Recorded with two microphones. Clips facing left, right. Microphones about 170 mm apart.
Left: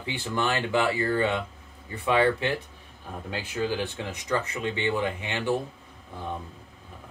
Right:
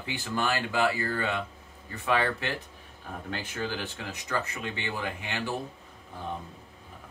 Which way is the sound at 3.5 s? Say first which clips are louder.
Left 8 dB; 15° left (ahead or behind).